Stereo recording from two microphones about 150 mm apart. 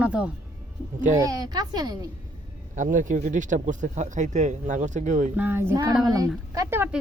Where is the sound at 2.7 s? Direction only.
60° right (ahead or behind).